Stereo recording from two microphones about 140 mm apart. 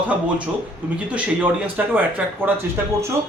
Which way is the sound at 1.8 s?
10° right (ahead or behind).